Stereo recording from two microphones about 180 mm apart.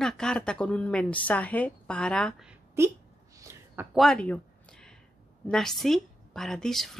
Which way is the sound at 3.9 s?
Centre (ahead or behind).